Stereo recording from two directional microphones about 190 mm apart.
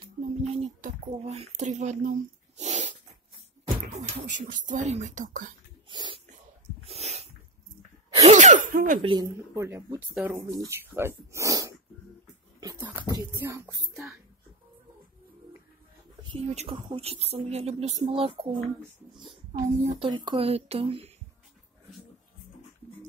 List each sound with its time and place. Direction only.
0.0 s a sound: 35° right (ahead or behind)
3.8 s a woman's voice: 35° right (ahead or behind)
5.9 s dog: 25° right (ahead or behind)
6.8 s sneeze: 35° right (ahead or behind)
9.0 s speech: 25° right (ahead or behind)
12.5 s dog: 20° right (ahead or behind)
13.2 s speech: 15° right (ahead or behind)
16.3 s a woman's voice: 30° right (ahead or behind)
20.0 s speech: 25° right (ahead or behind)